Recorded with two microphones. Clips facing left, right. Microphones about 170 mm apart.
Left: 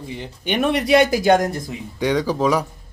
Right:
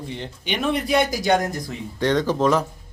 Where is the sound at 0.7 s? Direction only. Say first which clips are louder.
Left 5 dB; 85° left; by 1.4 s 60° left (ahead or behind).